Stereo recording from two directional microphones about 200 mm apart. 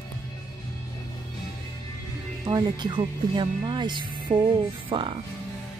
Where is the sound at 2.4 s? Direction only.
20° right (ahead or behind).